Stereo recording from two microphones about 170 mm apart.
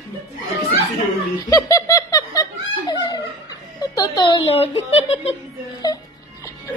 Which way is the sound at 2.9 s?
25° left (ahead or behind).